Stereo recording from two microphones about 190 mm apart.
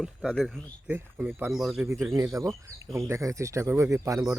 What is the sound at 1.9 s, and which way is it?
Speech, 15° right (ahead or behind).